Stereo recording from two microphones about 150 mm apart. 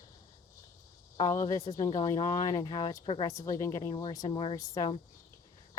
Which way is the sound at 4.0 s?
35° left (ahead or behind).